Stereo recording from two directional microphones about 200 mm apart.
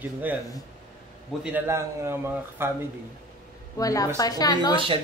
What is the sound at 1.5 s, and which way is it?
A man's voice, 10° right (ahead or behind).